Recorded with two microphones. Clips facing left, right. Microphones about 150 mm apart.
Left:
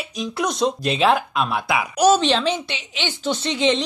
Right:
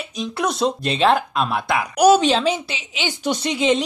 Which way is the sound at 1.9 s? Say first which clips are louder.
Right 3 dB; 10° right (ahead or behind).